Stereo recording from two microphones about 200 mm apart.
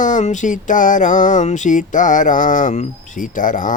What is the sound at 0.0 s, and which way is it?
Music, 40° left (ahead or behind).